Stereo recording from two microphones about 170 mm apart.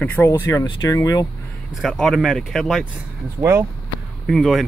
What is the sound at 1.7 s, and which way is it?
Speech, centre (ahead or behind).